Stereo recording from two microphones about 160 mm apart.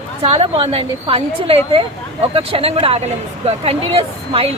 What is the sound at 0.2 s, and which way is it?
Speech, 35° right (ahead or behind).